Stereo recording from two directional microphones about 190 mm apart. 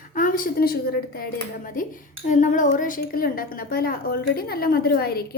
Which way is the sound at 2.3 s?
40° left (ahead or behind).